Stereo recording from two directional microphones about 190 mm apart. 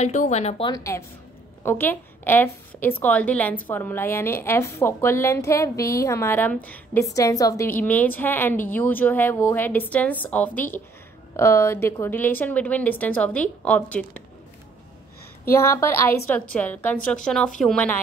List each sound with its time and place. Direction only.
0.0 s speech: 40° left (ahead or behind)
0.7 s a woman's voice: 20° left (ahead or behind)
15.4 s a woman's voice: 15° left (ahead or behind)